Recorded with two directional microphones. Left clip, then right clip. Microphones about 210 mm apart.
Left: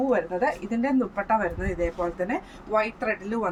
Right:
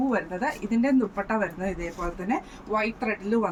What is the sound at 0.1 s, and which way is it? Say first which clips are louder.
A woman's voice: left 4 dB; 15° left (ahead or behind).